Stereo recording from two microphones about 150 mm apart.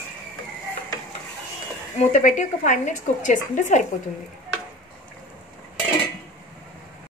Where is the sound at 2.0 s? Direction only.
55° left (ahead or behind).